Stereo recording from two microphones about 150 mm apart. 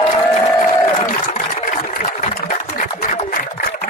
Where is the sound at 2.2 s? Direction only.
60° left (ahead or behind).